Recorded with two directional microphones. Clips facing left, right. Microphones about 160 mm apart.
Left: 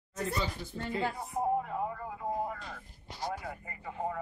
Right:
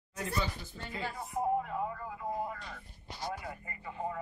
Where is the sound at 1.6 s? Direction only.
25° left (ahead or behind).